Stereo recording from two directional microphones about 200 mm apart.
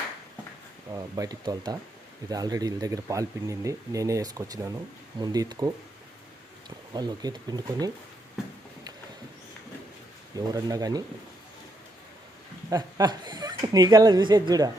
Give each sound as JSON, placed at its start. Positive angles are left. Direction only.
{"t": 0.9, "sound": "speech", "side_deg": -15}
{"t": 10.3, "sound": "speech", "side_deg": -20}
{"t": 12.7, "sound": "speech", "side_deg": -20}